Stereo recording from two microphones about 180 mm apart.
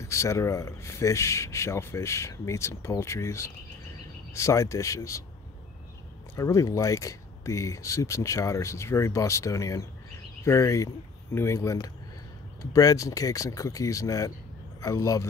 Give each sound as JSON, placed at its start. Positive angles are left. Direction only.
{"t": 0.0, "sound": "speech", "side_deg": 15}
{"t": 6.3, "sound": "speech", "side_deg": 20}